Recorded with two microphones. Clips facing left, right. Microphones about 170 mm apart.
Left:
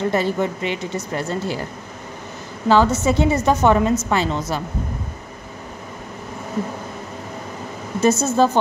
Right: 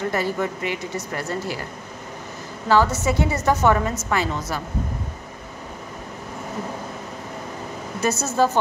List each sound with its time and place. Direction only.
0.1 s a woman's voice: 25° left (ahead or behind)
2.7 s a woman's voice: 20° left (ahead or behind)
8.0 s a woman's voice: 20° left (ahead or behind)